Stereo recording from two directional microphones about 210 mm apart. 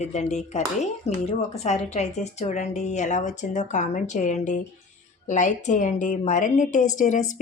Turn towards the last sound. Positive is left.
turn(degrees=35)  # may be behind; listen again after turning